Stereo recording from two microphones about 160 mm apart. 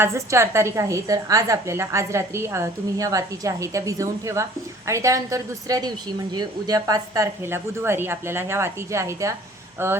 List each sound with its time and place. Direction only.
0.0 s a woman's voice: 15° right (ahead or behind)